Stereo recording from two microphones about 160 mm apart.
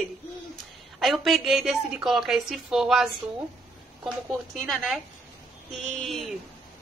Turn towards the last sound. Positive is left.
turn(degrees=0)  # may be behind; listen again after turning